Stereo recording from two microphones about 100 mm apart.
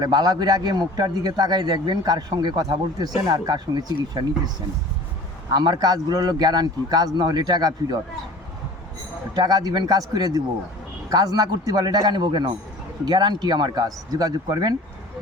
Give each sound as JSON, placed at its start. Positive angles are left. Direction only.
{"t": 0.0, "sound": "a man's voice", "side_deg": -45}
{"t": 9.3, "sound": "speech", "side_deg": -40}